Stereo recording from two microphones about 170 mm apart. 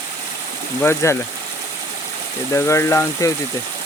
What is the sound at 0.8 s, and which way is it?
Speech, 15° left (ahead or behind).